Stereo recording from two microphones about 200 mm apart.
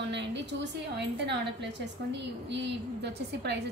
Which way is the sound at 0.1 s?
60° right (ahead or behind).